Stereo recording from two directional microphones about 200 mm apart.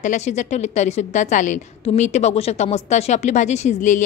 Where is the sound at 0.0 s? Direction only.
35° left (ahead or behind).